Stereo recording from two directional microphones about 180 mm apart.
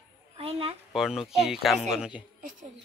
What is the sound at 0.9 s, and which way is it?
Speech, centre (ahead or behind).